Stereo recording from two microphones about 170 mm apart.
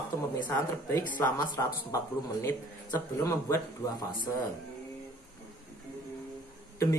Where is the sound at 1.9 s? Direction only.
15° left (ahead or behind).